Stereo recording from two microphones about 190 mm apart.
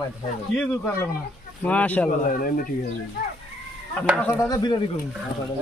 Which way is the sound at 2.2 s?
45° left (ahead or behind).